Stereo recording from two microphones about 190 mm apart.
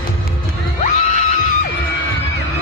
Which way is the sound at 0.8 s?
40° left (ahead or behind).